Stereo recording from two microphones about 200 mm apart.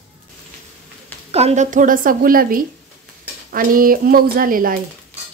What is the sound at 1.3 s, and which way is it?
A woman's voice, 35° right (ahead or behind).